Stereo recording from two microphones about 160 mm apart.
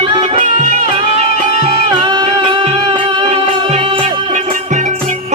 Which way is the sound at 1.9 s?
30° right (ahead or behind).